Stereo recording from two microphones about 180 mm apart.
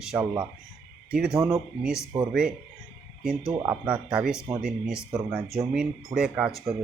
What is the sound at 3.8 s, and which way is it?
Speech, 5° right (ahead or behind).